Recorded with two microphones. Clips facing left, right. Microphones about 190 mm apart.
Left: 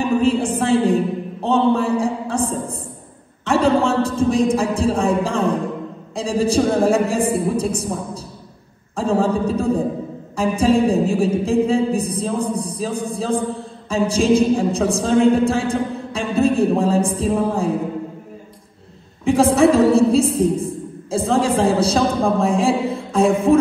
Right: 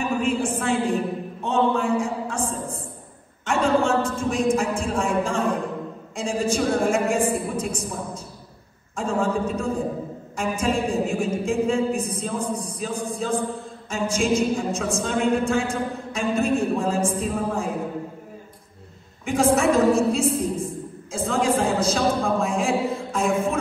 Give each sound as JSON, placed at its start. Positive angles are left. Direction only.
{"t": 0.0, "sound": "a sound", "side_deg": 35}
{"t": 6.1, "sound": "music", "side_deg": 35}
{"t": 8.9, "sound": "music", "side_deg": 35}
{"t": 15.3, "sound": "a man's voice", "side_deg": 35}
{"t": 19.2, "sound": "a woman's voice", "side_deg": 35}